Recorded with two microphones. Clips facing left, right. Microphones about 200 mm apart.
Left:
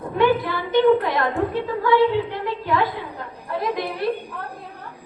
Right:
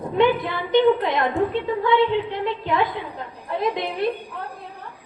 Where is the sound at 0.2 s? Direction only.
20° right (ahead or behind).